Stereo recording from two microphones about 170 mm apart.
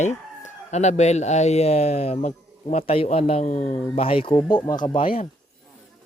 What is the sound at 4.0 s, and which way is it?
Speech, 30° left (ahead or behind).